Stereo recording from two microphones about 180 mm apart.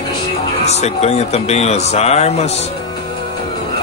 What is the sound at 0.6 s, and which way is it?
Speech, 35° left (ahead or behind).